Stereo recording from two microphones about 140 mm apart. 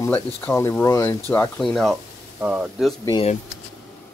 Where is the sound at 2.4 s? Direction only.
10° right (ahead or behind).